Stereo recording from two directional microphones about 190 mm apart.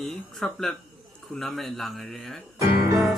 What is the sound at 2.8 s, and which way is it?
Music, 15° right (ahead or behind).